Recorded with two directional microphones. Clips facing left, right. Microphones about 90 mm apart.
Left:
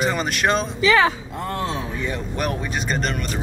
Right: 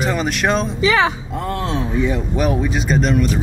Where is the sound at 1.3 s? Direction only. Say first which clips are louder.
Right 4 dB; centre (ahead or behind).